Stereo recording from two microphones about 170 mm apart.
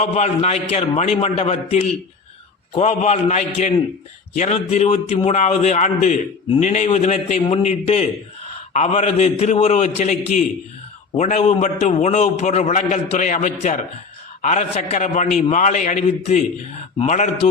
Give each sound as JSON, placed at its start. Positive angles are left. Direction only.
{"t": 0.0, "sound": "a man's voice", "side_deg": 40}